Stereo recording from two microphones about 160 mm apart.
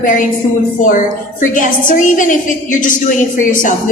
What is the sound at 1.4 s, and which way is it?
A woman's voice, 55° left (ahead or behind).